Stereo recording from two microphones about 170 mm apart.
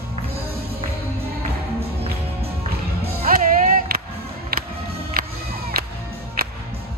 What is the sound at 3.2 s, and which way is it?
Music, 50° right (ahead or behind).